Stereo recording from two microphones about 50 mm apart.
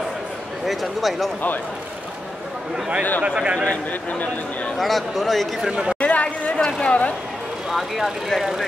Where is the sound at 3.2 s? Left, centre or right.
Right.